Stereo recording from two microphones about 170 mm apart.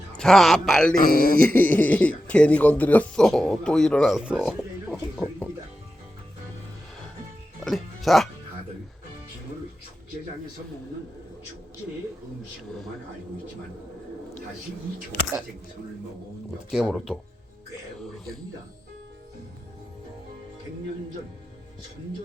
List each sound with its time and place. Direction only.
0.2 s speech: centre (ahead or behind)
0.9 s speech: 55° left (ahead or behind)
1.4 s speech: 10° left (ahead or behind)
7.6 s speech: centre (ahead or behind)
16.7 s speech: centre (ahead or behind)